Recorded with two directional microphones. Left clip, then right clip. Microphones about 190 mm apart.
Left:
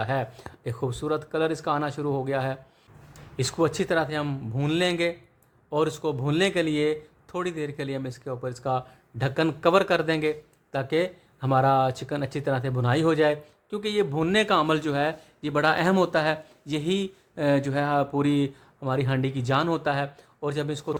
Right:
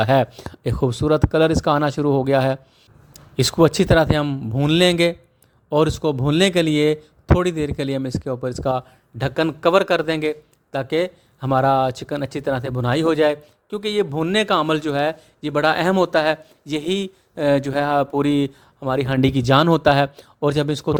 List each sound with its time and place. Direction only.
0.0 s speech: 40° right (ahead or behind)
4.3 s a man's voice: 30° right (ahead or behind)
4.7 s speech: 40° right (ahead or behind)